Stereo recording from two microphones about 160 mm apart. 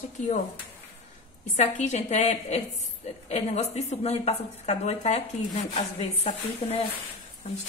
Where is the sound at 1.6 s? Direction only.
45° left (ahead or behind).